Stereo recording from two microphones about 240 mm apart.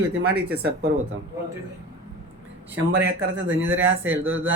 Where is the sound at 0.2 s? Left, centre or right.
Right.